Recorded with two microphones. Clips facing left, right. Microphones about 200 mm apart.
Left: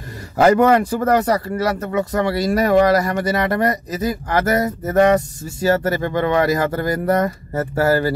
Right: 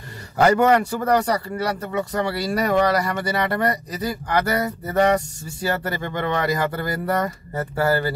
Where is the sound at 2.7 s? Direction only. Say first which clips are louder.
Left 5 dB; 45° left (ahead or behind).